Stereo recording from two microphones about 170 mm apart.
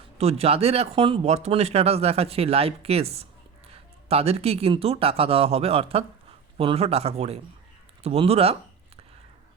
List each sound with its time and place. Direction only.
0.2 s speech: 35° right (ahead or behind)